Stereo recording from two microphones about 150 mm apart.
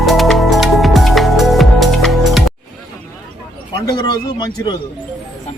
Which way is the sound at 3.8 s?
25° left (ahead or behind).